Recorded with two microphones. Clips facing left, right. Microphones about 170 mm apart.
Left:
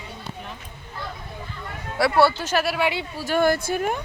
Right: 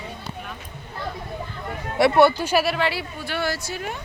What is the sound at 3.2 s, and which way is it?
Speech, 45° left (ahead or behind).